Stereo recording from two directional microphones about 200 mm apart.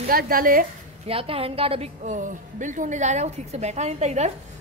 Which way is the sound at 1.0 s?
30° right (ahead or behind).